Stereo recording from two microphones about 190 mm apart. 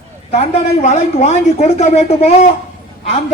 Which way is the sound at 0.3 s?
35° left (ahead or behind).